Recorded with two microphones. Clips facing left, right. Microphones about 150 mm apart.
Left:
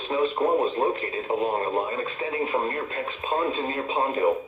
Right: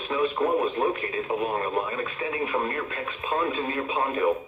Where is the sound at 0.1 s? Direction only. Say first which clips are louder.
Left 1 dB; 25° left (ahead or behind).